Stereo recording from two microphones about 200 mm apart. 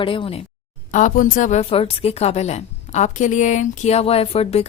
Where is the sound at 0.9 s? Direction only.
40° left (ahead or behind).